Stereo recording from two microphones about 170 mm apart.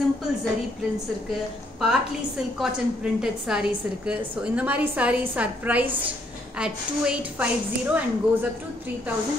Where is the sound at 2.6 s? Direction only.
5° right (ahead or behind).